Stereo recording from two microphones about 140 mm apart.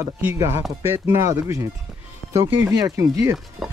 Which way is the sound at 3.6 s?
Centre (ahead or behind).